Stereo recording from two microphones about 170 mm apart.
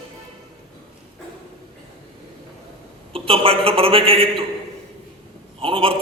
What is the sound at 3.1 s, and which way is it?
A man's voice, 35° right (ahead or behind).